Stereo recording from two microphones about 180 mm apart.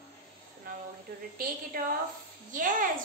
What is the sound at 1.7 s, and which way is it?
A woman's voice, 55° right (ahead or behind).